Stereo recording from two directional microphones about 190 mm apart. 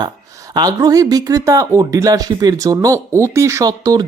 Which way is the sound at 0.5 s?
20° right (ahead or behind).